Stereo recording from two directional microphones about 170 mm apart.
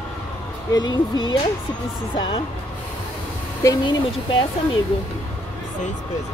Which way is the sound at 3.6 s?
25° left (ahead or behind).